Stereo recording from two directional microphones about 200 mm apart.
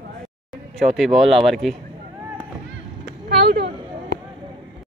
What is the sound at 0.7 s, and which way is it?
Speech, centre (ahead or behind).